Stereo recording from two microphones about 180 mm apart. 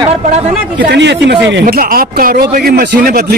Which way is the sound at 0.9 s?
70° right (ahead or behind).